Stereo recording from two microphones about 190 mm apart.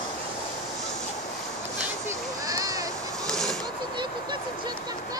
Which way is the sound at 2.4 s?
20° right (ahead or behind).